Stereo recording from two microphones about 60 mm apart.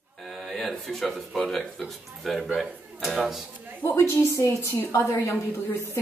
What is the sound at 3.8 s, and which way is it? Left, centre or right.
A woman's voice, left.